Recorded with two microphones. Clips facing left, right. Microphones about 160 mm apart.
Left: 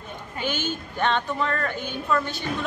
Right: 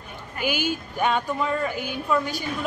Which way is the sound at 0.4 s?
10° right (ahead or behind).